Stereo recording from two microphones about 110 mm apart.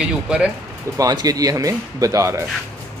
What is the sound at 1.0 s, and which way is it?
Speech, 35° right (ahead or behind).